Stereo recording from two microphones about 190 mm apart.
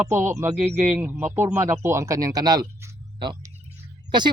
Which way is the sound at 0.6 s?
40° right (ahead or behind).